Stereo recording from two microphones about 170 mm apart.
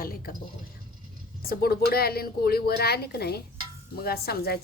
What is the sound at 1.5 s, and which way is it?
A woman's voice, 65° left (ahead or behind).